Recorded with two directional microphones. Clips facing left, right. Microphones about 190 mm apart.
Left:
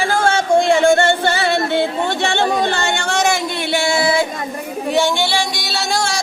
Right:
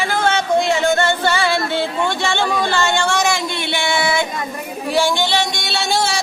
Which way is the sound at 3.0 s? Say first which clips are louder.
Even; 50° left (ahead or behind).